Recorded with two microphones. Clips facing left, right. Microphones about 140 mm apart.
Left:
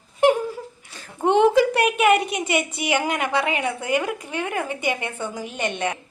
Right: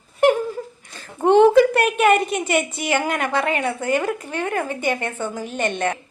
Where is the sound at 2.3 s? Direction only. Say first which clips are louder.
Right 3 dB; 10° left (ahead or behind).